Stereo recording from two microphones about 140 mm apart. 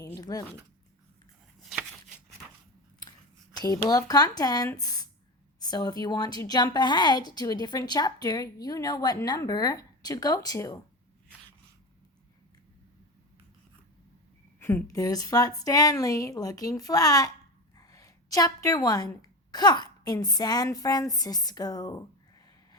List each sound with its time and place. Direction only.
0.0 s speech: 25° left (ahead or behind)
3.5 s a sound: 25° left (ahead or behind)
3.8 s a woman's voice: 25° left (ahead or behind)
14.6 s a woman's voice: 15° left (ahead or behind)